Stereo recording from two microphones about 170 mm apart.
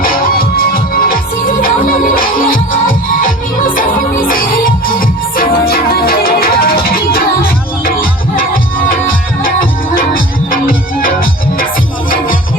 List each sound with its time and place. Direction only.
0.0 s music: 60° left (ahead or behind)